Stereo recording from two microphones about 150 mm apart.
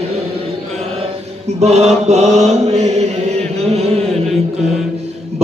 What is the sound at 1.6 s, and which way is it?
Chant, 50° right (ahead or behind).